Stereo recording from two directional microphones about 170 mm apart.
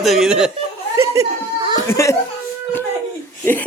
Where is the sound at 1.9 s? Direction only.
15° left (ahead or behind).